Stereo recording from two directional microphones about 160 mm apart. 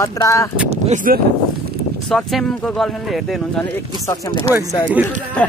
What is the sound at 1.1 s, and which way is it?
Speech, 60° right (ahead or behind).